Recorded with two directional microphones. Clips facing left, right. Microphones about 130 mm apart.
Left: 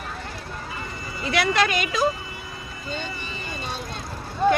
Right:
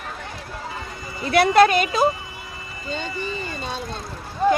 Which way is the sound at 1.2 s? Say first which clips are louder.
Right 7 dB; 50° right (ahead or behind).